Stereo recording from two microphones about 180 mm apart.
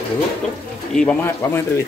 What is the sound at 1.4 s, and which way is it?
Speech, 15° left (ahead or behind).